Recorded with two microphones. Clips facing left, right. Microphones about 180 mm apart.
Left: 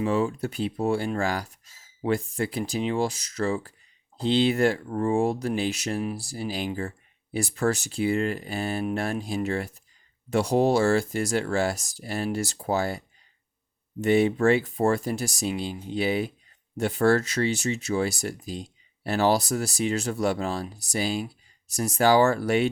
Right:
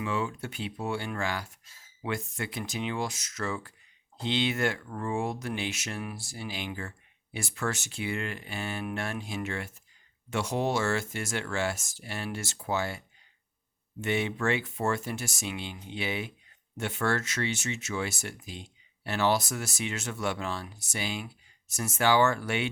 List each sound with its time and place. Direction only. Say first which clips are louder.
0.0 s speech: left 7 dB; 35° left (ahead or behind)